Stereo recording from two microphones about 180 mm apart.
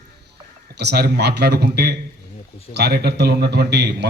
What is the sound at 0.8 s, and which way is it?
A man's voice, 65° right (ahead or behind).